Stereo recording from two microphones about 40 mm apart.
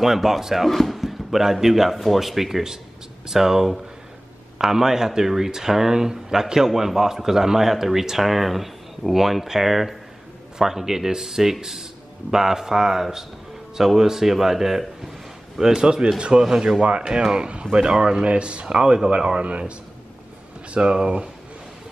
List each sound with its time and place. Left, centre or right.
0.0 s speech: centre
0.7 s speech: centre; by 19.4 s right
20.7 s speech: right